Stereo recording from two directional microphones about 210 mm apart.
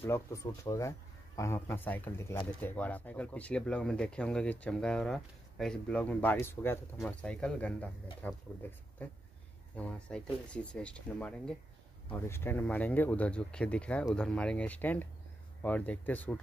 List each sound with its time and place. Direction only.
0.0 s speech: 15° left (ahead or behind)
9.8 s speech: 5° left (ahead or behind)